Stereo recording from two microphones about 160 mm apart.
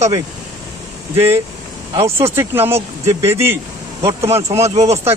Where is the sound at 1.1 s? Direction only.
15° right (ahead or behind).